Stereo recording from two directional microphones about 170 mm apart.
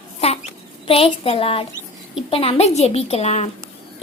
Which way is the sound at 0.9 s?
35° left (ahead or behind).